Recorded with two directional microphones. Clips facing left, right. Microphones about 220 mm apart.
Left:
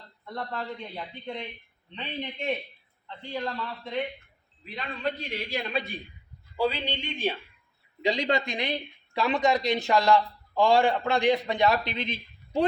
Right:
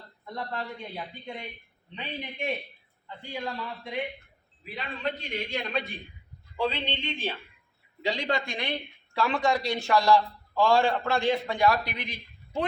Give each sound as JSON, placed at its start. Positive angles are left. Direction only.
{"t": 0.3, "sound": "a man's voice", "side_deg": -10}
{"t": 3.2, "sound": "a man's voice", "side_deg": -10}